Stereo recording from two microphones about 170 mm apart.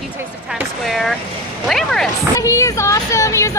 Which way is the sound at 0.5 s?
Centre (ahead or behind).